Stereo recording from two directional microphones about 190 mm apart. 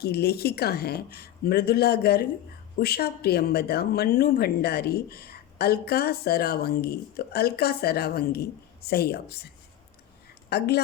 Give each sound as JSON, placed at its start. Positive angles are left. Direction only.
{"t": 0.0, "sound": "a woman's voice", "side_deg": 55}
{"t": 10.5, "sound": "a woman's voice", "side_deg": 60}